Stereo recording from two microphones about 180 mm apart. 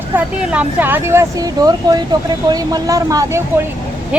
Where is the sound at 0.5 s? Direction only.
10° right (ahead or behind).